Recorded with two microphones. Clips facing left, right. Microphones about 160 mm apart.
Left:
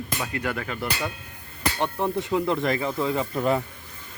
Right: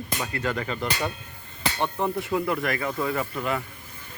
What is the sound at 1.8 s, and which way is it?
Speech, 15° left (ahead or behind).